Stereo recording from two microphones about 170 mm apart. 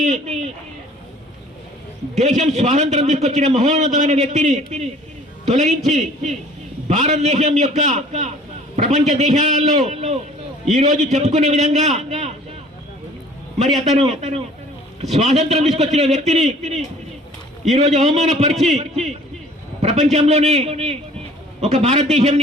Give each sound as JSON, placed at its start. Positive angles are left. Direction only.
{"t": 0.0, "sound": "a man's voice", "side_deg": -40}
{"t": 2.1, "sound": "a man's voice", "side_deg": -40}
{"t": 13.8, "sound": "a man's voice", "side_deg": -40}
{"t": 19.8, "sound": "a sound", "side_deg": -45}
{"t": 20.1, "sound": "a man's voice", "side_deg": -40}